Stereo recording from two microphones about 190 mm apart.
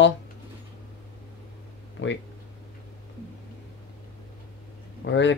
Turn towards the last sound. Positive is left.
turn(degrees=75)  # may be behind; listen again after turning